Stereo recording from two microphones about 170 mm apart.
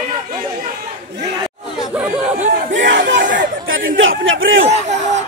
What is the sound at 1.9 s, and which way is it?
Chatter, 5° right (ahead or behind).